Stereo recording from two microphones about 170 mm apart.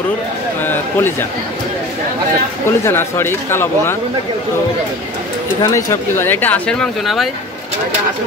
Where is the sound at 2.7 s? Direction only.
15° left (ahead or behind).